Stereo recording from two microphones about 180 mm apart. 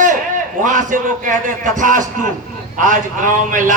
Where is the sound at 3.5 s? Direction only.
45° right (ahead or behind).